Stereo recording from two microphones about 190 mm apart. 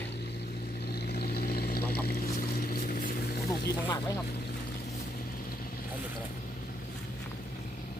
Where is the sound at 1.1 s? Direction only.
55° left (ahead or behind).